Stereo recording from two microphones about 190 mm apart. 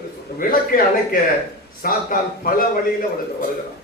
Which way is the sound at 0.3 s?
50° left (ahead or behind).